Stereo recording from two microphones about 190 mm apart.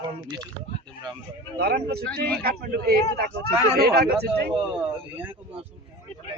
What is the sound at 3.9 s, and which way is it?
Speech, 55° right (ahead or behind).